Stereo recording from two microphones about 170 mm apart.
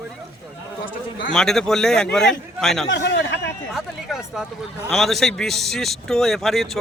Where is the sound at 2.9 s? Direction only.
85° left.